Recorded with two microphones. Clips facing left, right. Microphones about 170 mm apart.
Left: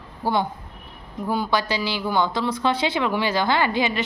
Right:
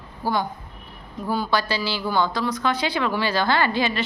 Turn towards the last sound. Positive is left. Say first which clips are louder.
# even
turn(degrees=15)  # may be behind; listen again after turning